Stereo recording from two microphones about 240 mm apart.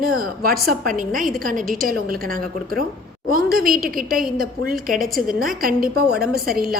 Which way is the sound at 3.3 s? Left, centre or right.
Right.